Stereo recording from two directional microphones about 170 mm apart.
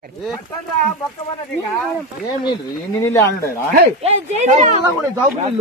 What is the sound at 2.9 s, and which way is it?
Speech, 15° left (ahead or behind).